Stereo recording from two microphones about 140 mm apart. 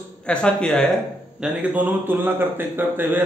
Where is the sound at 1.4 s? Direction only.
10° right (ahead or behind).